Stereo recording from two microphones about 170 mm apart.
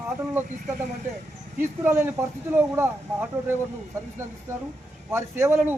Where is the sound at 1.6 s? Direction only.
15° right (ahead or behind).